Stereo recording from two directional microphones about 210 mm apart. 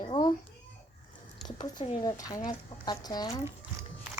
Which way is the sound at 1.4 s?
20° left (ahead or behind).